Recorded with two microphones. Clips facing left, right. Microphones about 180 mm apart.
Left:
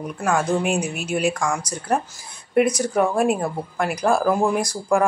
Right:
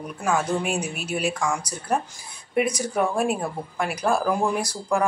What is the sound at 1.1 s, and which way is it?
Speech, 5° right (ahead or behind).